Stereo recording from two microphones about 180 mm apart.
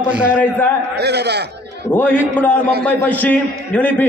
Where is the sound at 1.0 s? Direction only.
65° right (ahead or behind).